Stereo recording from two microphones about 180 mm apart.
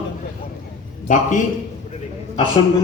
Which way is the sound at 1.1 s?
45° left (ahead or behind).